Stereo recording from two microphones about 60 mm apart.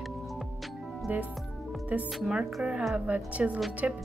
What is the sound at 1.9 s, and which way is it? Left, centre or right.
A woman's voice, right.